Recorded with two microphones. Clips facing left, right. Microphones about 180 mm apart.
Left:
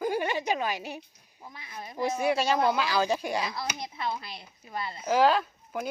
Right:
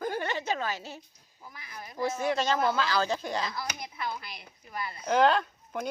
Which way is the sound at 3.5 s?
25° left (ahead or behind).